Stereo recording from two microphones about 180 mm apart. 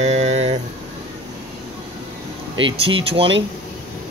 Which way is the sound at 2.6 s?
30° right (ahead or behind).